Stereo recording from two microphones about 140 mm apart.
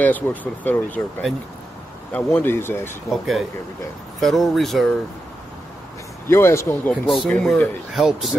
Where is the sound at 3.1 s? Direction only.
Centre (ahead or behind).